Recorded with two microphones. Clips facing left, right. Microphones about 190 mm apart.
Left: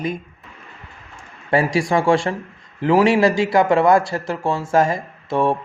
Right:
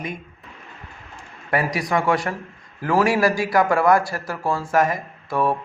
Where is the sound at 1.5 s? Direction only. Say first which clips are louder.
Left 4 dB; 30° left (ahead or behind).